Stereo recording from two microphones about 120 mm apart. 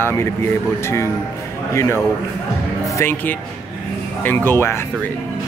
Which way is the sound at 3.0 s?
20° left (ahead or behind).